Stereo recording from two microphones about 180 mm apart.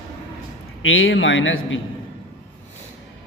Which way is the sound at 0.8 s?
90° left.